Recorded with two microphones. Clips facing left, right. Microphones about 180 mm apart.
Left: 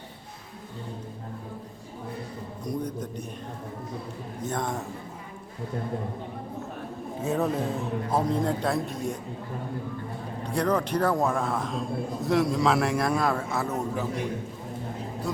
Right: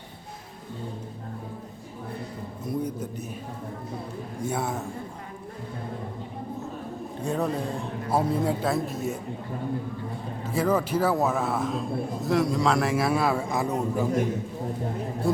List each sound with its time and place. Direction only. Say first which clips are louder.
2.6 s a man's voice: right 2 dB; 5° right (ahead or behind)
4.4 s a man's voice: right 1 dB; 10° right (ahead or behind)
7.2 s a man's voice: left 1 dB; centre (ahead or behind)
10.4 s a man's voice: right 1 dB; 5° right (ahead or behind)